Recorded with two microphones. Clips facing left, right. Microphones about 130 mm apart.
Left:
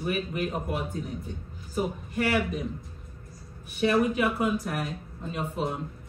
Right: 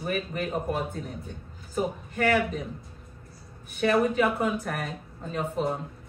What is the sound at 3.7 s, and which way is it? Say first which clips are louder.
A man's voice: right 1 dB; 45° right (ahead or behind).